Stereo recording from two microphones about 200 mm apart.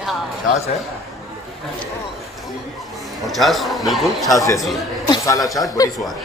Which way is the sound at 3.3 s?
Centre (ahead or behind).